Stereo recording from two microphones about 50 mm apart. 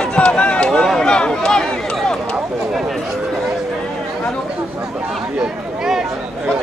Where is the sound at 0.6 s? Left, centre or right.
Centre.